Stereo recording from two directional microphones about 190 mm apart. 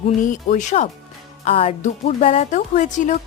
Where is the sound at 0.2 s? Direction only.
40° left (ahead or behind).